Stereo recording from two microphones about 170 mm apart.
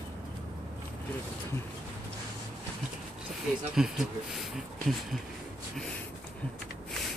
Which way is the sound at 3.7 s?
Centre (ahead or behind).